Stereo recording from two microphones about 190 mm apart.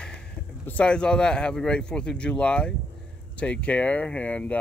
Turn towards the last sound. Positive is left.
turn(degrees=5)  # may be behind; listen again after turning